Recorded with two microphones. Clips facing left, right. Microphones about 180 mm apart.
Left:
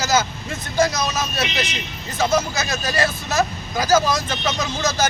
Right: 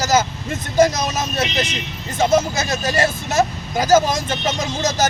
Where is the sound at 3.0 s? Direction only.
25° right (ahead or behind).